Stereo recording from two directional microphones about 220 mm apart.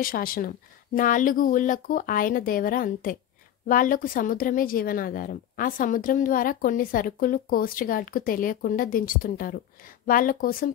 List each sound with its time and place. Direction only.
0.0 s a woman's voice: 40° left (ahead or behind)